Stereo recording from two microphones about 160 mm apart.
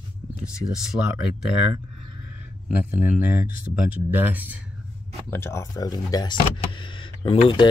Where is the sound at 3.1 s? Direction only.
10° right (ahead or behind).